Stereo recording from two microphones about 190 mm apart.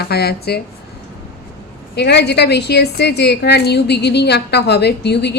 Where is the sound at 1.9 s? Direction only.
60° left (ahead or behind).